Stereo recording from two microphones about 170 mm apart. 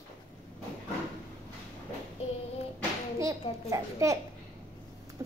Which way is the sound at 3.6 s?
20° right (ahead or behind).